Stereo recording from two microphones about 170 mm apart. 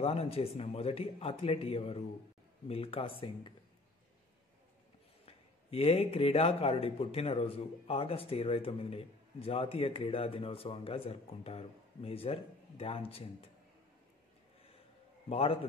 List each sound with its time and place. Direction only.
0.0 s a man's voice: 35° left (ahead or behind)
5.2 s a man's voice: 35° left (ahead or behind)
15.2 s a man's voice: 35° left (ahead or behind)